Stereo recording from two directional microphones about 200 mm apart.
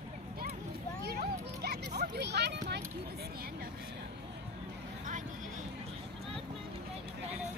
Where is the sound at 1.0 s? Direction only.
50° right (ahead or behind).